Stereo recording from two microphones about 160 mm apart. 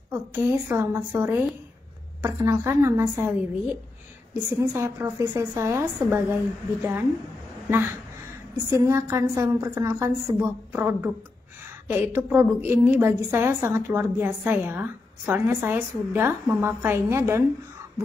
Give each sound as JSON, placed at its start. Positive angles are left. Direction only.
{"t": 0.1, "sound": "a woman's voice", "side_deg": -15}
{"t": 8.7, "sound": "a woman's voice", "side_deg": -20}